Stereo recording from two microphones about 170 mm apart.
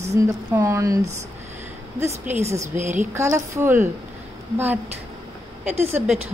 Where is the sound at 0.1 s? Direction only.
20° right (ahead or behind).